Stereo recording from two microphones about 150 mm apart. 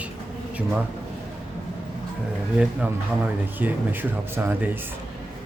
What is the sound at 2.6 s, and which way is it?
Speech, 10° right (ahead or behind).